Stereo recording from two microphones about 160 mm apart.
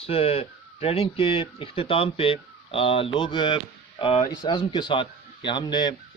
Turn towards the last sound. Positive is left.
turn(degrees=25)  # may be behind; listen again after turning